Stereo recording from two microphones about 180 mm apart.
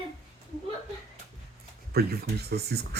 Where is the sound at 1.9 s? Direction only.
60° right (ahead or behind).